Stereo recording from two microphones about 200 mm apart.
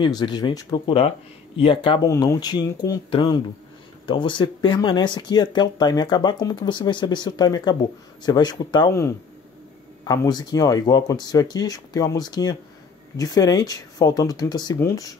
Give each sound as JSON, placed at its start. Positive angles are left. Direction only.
{"t": 0.0, "sound": "speech", "side_deg": 20}